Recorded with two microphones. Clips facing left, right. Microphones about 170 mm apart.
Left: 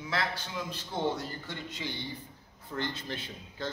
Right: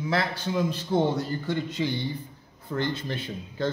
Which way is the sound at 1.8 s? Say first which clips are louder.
Right 10 dB; 65° right (ahead or behind).